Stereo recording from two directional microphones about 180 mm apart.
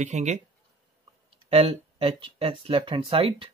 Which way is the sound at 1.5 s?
35° right (ahead or behind).